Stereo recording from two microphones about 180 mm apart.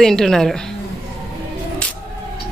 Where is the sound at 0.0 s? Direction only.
5° left (ahead or behind).